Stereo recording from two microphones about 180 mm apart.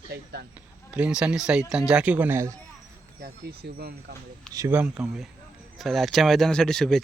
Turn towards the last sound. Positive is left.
turn(degrees=5)  # may be behind; listen again after turning